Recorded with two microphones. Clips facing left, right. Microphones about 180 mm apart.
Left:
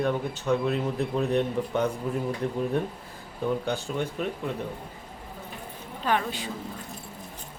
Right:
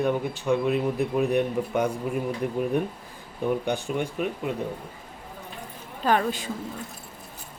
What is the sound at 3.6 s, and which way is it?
Speech, 15° right (ahead or behind).